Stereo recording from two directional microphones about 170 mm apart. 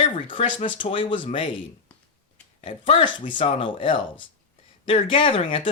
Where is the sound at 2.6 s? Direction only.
35° left (ahead or behind).